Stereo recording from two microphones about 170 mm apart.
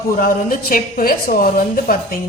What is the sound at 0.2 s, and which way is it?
A woman's voice, 55° left (ahead or behind).